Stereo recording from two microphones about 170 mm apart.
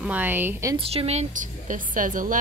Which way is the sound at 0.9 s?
35° right (ahead or behind).